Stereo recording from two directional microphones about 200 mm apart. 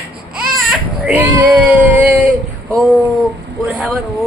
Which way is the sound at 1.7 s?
10° right (ahead or behind).